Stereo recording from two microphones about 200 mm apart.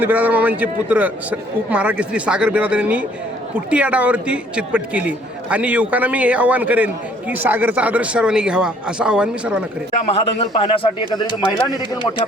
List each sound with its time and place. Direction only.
0.0 s a man's voice: 10° right (ahead or behind)
10.3 s speech: 25° left (ahead or behind)